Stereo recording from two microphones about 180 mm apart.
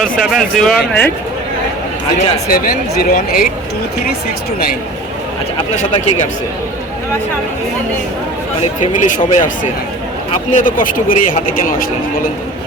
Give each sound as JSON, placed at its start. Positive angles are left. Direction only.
{"t": 0.0, "sound": "speech", "side_deg": 0}
{"t": 2.5, "sound": "speech", "side_deg": 55}
{"t": 5.7, "sound": "speech", "side_deg": 40}
{"t": 8.8, "sound": "speech", "side_deg": 45}
{"t": 10.5, "sound": "speech", "side_deg": 50}